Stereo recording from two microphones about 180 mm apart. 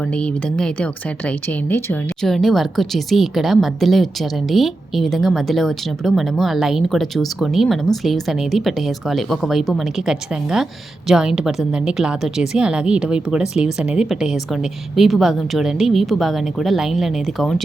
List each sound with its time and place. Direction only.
0.1 s speech: 5° left (ahead or behind)